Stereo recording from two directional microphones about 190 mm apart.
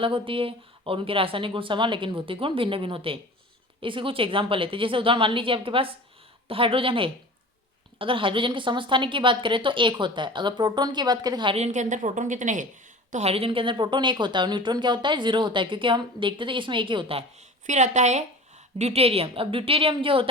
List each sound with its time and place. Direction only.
0.0 s a woman's voice: 30° right (ahead or behind)
17.7 s a woman's voice: 40° right (ahead or behind)